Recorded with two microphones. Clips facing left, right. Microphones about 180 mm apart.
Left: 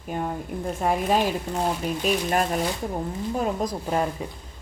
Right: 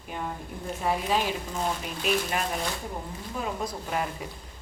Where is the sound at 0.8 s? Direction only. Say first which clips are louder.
Left 4 dB; 50° left (ahead or behind).